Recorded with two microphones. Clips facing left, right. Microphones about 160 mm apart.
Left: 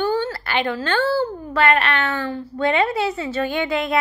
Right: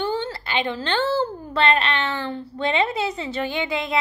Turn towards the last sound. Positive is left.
turn(degrees=-20)  # may be behind; listen again after turning